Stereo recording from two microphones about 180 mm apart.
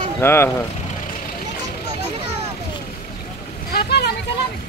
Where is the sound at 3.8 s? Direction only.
65° left (ahead or behind).